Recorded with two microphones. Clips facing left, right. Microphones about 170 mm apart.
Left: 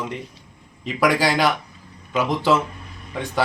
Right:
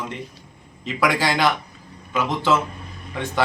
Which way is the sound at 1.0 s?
40° left (ahead or behind).